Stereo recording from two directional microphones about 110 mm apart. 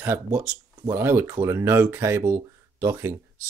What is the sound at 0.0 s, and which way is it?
Speech, 20° right (ahead or behind).